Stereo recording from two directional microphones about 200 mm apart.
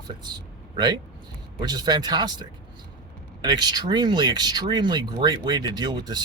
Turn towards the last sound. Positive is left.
turn(degrees=-20)  # may be behind; listen again after turning